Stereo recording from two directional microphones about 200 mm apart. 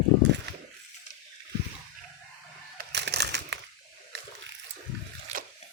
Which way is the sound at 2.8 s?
55° right (ahead or behind).